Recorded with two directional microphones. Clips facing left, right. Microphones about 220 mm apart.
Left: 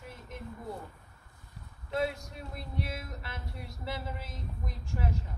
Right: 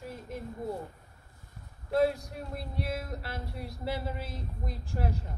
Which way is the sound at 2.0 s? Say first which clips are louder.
Right 6 dB; 35° right (ahead or behind).